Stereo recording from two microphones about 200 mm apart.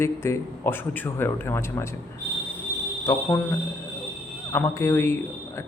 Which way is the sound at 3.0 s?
15° left (ahead or behind).